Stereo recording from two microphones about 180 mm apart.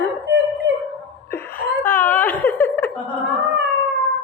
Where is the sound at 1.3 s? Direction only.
10° left (ahead or behind).